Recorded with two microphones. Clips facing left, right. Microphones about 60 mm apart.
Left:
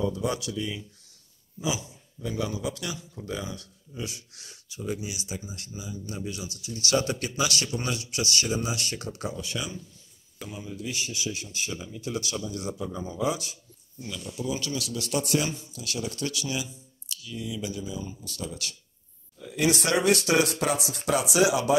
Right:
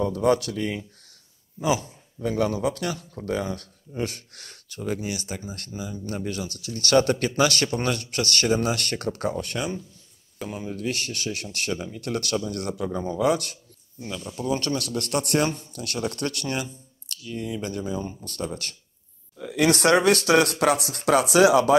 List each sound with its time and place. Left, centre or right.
0.0 s speech: right
14.0 s speech: right
19.3 s speech: right